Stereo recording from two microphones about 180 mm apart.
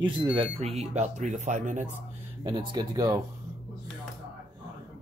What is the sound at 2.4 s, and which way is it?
Speech, 20° right (ahead or behind).